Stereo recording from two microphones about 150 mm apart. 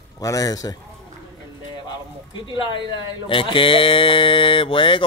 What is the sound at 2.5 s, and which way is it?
Speech, 35° left (ahead or behind).